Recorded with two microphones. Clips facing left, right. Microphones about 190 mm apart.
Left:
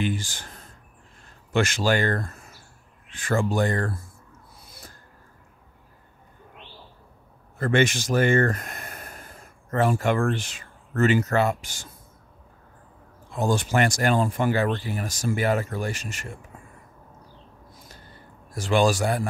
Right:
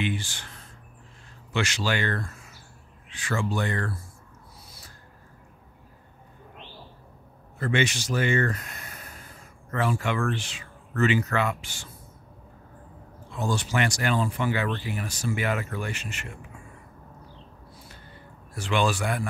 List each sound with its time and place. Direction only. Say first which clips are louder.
0.0 s speech: left 2 dB; 45° left (ahead or behind)
7.5 s speech: left 4 dB; 45° left (ahead or behind)
13.3 s speech: left 4 dB; 50° left (ahead or behind)
17.7 s a sound: even; 40° left (ahead or behind)
18.5 s speech: left 4 dB; 40° left (ahead or behind)